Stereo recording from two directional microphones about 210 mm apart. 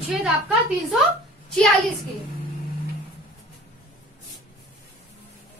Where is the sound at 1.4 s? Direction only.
5° left (ahead or behind).